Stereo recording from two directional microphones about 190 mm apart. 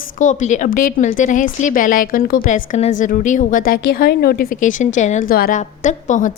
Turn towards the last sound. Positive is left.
turn(degrees=40)  # may be behind; listen again after turning